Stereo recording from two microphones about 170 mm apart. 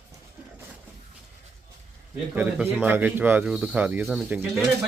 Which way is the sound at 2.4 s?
10° right (ahead or behind).